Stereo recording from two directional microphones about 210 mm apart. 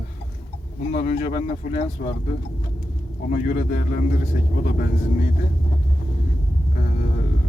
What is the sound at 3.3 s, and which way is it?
Speech, 40° left (ahead or behind).